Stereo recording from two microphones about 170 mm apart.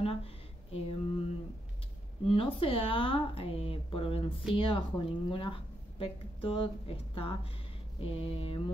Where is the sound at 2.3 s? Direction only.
30° left (ahead or behind).